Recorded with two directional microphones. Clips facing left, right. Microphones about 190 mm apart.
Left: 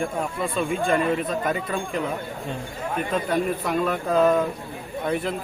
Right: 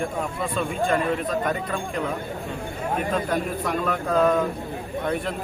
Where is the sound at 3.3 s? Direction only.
5° left (ahead or behind).